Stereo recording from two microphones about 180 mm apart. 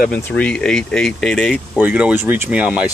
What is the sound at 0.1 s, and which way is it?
Speech, 5° left (ahead or behind).